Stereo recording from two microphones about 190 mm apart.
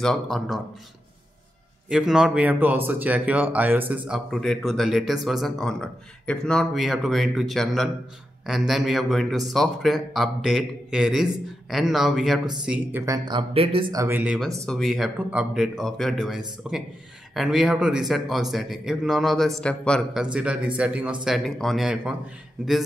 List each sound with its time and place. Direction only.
0.0 s speech: centre (ahead or behind)
1.9 s speech: 5° right (ahead or behind); by 14.0 s 25° right (ahead or behind)
14.0 s speech: 10° right (ahead or behind)
20.3 s speech: 5° right (ahead or behind)